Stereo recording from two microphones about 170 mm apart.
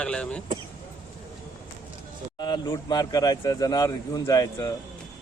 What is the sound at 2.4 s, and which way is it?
Speech, 25° left (ahead or behind).